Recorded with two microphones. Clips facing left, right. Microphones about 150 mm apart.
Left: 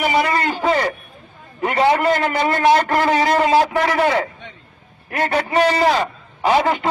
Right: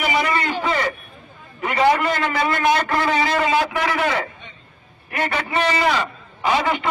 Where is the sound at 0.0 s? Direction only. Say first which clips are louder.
Left 3 dB; 40° left (ahead or behind).